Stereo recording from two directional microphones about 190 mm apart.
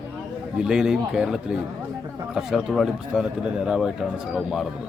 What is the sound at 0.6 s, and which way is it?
Speech, 5° right (ahead or behind).